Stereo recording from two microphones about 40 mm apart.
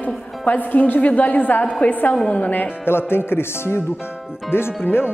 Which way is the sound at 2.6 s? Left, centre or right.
Left.